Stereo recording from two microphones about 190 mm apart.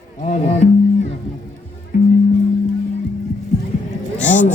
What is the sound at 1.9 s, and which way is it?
Music, 45° left (ahead or behind).